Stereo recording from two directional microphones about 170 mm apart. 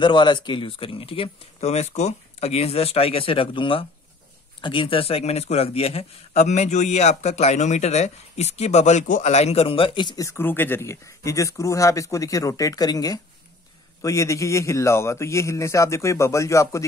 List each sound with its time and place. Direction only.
0.0 s a man's voice: 30° left (ahead or behind)